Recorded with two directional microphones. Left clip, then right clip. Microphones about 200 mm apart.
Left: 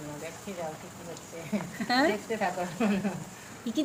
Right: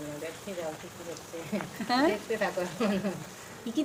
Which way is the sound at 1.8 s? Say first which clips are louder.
Left 1 dB; centre (ahead or behind).